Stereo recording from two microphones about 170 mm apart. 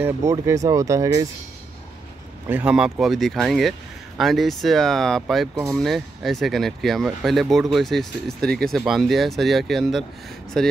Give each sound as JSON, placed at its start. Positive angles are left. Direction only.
{"t": 0.0, "sound": "speech", "side_deg": -15}
{"t": 2.4, "sound": "speech", "side_deg": -10}